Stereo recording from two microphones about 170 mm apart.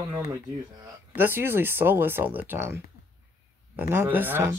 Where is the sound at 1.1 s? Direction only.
10° right (ahead or behind).